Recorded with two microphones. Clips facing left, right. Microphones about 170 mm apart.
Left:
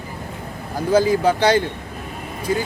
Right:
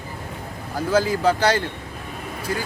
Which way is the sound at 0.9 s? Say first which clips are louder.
Left 3 dB; 15° left (ahead or behind).